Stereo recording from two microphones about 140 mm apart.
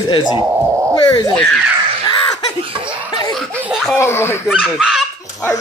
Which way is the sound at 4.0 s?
15° left (ahead or behind).